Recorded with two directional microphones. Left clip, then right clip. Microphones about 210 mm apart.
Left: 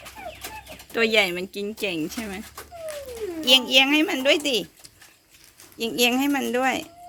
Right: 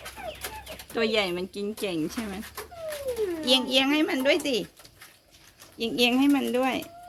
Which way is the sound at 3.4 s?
Centre (ahead or behind).